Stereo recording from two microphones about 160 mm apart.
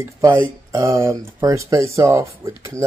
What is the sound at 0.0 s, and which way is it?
Speech, 15° right (ahead or behind).